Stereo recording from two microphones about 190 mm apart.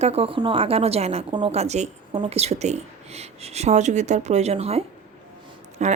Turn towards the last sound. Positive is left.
turn(degrees=-40)  # may be behind; listen again after turning